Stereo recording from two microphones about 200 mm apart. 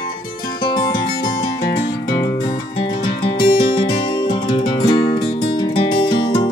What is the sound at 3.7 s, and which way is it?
Music, 25° left (ahead or behind).